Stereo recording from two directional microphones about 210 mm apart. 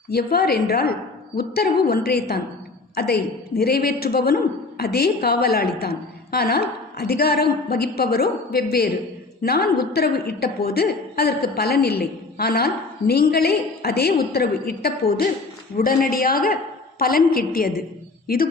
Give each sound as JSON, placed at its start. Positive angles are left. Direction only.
{"t": 0.1, "sound": "a woman's voice", "side_deg": 50}